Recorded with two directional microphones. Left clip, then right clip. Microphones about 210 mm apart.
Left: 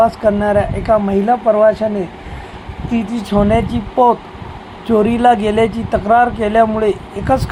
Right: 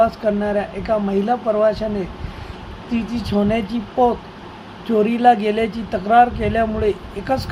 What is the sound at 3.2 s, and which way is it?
Speech, 15° left (ahead or behind).